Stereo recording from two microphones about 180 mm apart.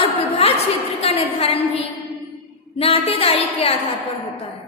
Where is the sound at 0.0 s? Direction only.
35° left (ahead or behind).